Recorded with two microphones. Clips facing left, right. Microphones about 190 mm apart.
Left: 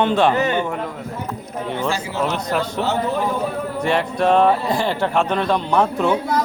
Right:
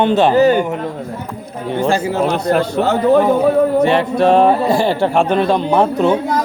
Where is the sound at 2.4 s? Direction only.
55° right (ahead or behind).